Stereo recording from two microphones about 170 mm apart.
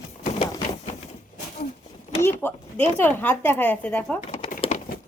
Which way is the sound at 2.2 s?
10° left (ahead or behind).